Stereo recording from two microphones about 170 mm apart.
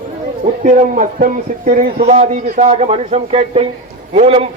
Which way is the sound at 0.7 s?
50° right (ahead or behind).